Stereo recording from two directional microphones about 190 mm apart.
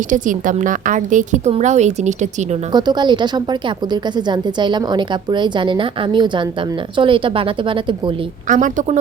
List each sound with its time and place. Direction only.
0.1 s a woman's voice: 45° right (ahead or behind)
2.7 s a woman's voice: 25° right (ahead or behind)
8.4 s a woman's voice: 40° right (ahead or behind)